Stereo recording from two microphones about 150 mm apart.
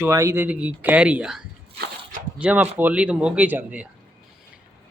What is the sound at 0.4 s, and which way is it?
Speech, 10° right (ahead or behind).